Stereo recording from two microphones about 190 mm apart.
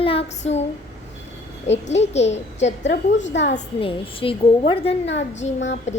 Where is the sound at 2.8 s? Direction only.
70° left (ahead or behind).